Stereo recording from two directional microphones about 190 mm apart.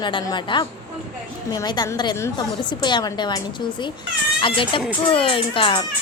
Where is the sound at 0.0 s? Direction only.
25° left (ahead or behind).